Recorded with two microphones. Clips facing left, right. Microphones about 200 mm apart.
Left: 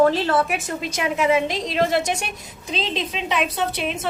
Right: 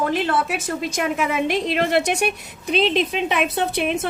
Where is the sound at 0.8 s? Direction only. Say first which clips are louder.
Left 1 dB; 50° right (ahead or behind).